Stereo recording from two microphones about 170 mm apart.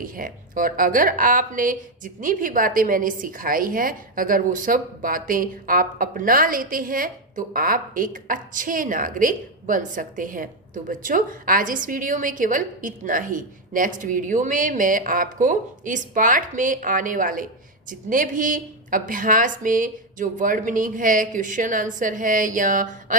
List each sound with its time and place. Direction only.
0.0 s a woman's voice: 55° right (ahead or behind)